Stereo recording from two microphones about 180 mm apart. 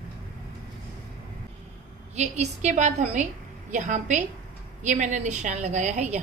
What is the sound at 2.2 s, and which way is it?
A woman's voice, 40° right (ahead or behind).